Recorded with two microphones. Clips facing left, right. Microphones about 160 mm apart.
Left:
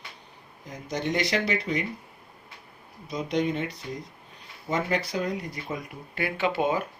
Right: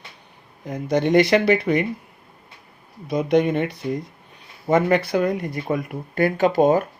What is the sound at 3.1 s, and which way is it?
Speech, 60° right (ahead or behind).